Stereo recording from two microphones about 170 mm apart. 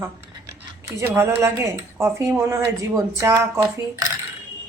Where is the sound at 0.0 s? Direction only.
15° right (ahead or behind).